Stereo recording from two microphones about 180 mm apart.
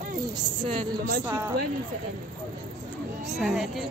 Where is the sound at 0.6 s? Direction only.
30° right (ahead or behind).